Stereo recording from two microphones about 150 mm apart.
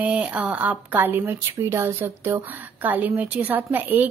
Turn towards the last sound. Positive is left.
turn(degrees=-10)  # may be behind; listen again after turning